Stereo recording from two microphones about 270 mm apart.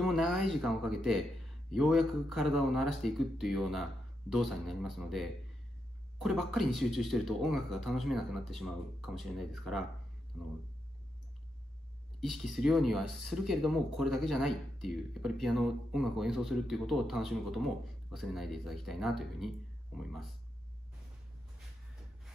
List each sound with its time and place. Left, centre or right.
0.0 s speech: centre
12.2 s speech: centre